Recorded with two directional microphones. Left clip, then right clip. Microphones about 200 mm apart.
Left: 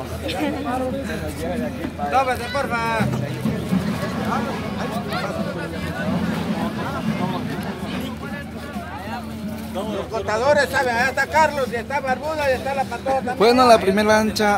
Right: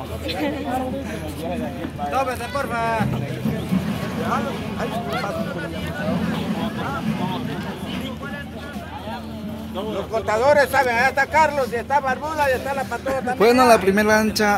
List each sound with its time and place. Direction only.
2.1 s a man's voice: 40° left (ahead or behind)
10.1 s speech: 40° right (ahead or behind)
13.4 s speech: 5° right (ahead or behind)